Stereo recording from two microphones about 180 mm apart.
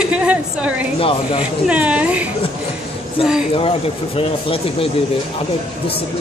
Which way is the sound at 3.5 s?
30° left (ahead or behind).